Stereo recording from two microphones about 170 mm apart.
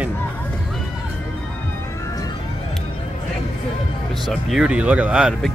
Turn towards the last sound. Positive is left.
turn(degrees=-5)  # may be behind; listen again after turning